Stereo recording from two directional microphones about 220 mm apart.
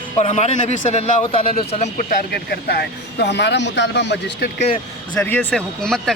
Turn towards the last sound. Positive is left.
turn(degrees=5)  # may be behind; listen again after turning